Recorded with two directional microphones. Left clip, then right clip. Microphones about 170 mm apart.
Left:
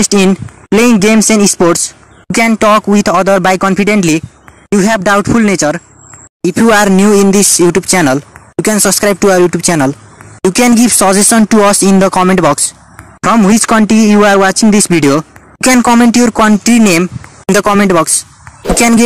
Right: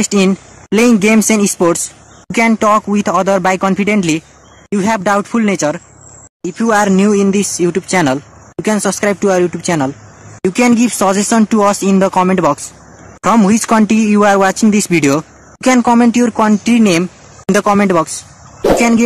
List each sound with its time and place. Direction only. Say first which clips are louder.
0.0 s speech: left 4 dB; 25° left (ahead or behind)